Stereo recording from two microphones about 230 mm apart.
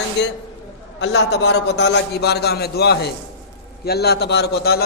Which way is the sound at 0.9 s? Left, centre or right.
Left.